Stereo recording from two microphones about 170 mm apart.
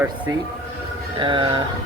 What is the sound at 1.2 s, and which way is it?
Speech, 30° right (ahead or behind).